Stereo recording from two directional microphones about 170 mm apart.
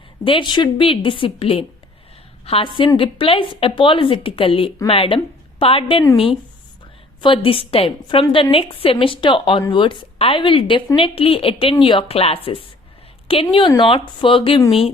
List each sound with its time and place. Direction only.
0.3 s a woman's voice: 30° left (ahead or behind)
7.2 s a woman's voice: 30° left (ahead or behind)